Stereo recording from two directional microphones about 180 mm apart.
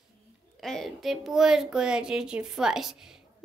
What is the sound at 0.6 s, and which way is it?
A child's voice, centre (ahead or behind).